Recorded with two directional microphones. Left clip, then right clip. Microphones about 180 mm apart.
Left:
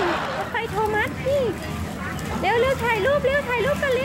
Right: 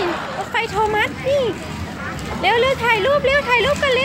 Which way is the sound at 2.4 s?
15° right (ahead or behind).